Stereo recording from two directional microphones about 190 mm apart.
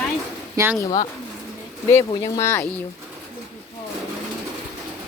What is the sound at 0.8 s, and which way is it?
Speech, 20° left (ahead or behind).